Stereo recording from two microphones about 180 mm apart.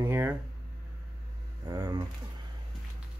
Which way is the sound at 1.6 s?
20° right (ahead or behind).